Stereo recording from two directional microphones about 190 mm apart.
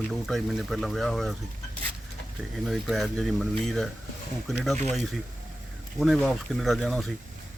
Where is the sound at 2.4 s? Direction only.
Centre (ahead or behind).